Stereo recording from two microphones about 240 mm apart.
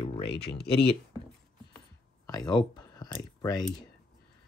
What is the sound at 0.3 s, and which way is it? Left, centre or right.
Speech, left.